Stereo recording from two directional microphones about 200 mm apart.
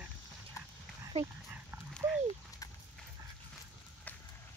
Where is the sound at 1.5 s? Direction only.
Centre (ahead or behind).